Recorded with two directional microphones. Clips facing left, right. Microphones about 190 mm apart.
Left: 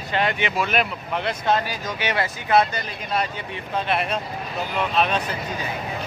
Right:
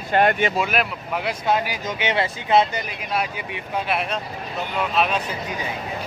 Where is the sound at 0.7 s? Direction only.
5° right (ahead or behind); by 2.8 s 20° right (ahead or behind).